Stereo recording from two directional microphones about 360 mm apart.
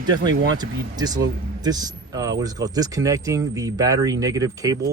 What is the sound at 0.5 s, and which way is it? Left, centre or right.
Speech, centre.